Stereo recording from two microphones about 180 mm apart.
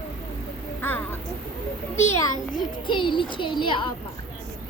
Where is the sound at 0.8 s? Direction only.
10° left (ahead or behind).